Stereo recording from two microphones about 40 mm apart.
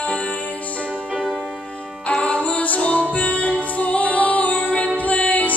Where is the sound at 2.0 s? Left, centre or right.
Left.